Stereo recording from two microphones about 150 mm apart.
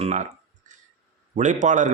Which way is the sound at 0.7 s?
55° right (ahead or behind).